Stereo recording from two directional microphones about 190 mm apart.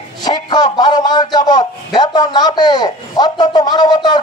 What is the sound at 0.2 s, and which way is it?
A man's voice, 20° left (ahead or behind).